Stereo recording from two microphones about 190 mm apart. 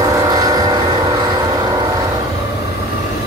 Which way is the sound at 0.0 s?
20° right (ahead or behind).